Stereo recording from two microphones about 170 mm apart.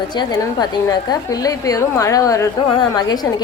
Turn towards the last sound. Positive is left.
turn(degrees=25)  # may be behind; listen again after turning